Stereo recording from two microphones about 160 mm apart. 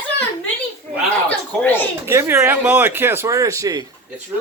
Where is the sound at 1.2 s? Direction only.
10° left (ahead or behind).